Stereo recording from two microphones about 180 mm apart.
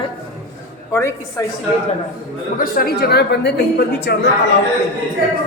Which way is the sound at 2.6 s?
55° left (ahead or behind).